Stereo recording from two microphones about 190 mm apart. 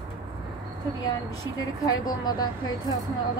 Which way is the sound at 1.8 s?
20° left (ahead or behind).